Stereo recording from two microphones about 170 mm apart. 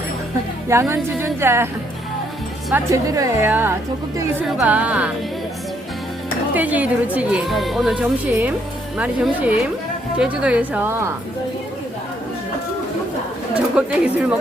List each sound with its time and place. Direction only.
0.7 s speech: 15° right (ahead or behind)
2.7 s speech: 20° right (ahead or behind)
6.5 s speech: 10° right (ahead or behind)
13.5 s speech: 5° right (ahead or behind)